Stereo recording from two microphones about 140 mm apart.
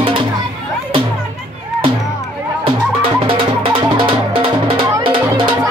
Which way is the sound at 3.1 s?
40° right (ahead or behind).